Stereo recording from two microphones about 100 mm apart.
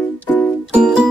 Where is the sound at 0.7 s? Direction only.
10° right (ahead or behind).